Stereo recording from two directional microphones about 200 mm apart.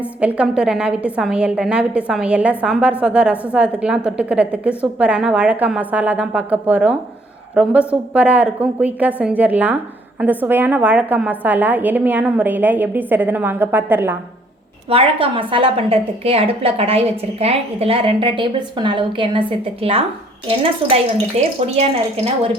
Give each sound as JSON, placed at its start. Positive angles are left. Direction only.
{"t": 0.0, "sound": "a woman's voice", "side_deg": -5}
{"t": 14.8, "sound": "a woman's voice", "side_deg": -25}